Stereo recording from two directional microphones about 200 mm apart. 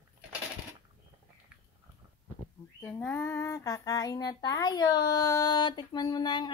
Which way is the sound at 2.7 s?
10° left (ahead or behind).